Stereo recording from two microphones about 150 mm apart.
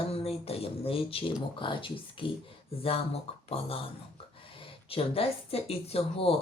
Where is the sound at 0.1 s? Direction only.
40° left (ahead or behind).